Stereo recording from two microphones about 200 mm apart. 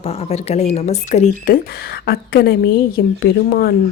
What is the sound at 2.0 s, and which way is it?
A woman's voice, 55° left (ahead or behind).